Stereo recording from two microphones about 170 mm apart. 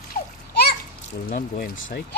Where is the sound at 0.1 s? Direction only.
70° left (ahead or behind).